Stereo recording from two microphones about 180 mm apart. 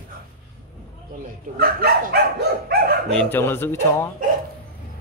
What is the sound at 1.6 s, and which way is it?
Dog, 55° right (ahead or behind).